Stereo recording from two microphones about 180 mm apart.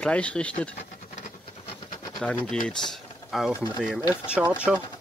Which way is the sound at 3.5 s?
20° left (ahead or behind).